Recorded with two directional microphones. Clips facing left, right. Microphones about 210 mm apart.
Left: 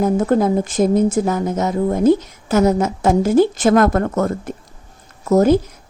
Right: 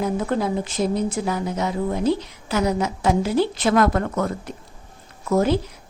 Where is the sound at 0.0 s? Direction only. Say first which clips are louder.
Left 7 dB; 45° left (ahead or behind).